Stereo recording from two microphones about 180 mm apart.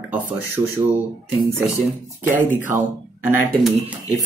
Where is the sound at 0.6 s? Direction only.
35° right (ahead or behind).